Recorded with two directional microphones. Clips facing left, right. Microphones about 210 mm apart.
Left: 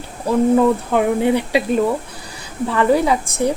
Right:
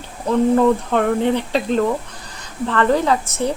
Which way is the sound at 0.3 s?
5° left (ahead or behind).